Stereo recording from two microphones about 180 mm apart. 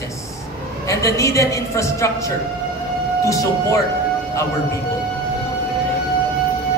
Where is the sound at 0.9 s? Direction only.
15° left (ahead or behind).